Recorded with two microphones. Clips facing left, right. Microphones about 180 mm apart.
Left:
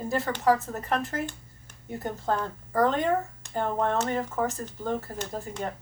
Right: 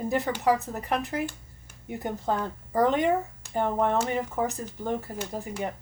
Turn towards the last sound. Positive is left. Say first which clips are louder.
# right 1 dB
turn(degrees=-10)  # may be behind; listen again after turning